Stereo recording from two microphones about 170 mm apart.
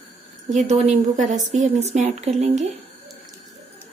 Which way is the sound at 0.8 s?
45° right (ahead or behind).